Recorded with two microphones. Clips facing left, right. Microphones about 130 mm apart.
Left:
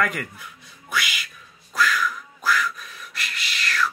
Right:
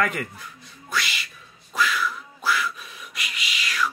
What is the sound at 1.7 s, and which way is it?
Quack, 5° right (ahead or behind).